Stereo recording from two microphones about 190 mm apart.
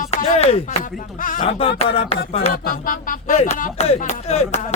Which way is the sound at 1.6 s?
30° left (ahead or behind).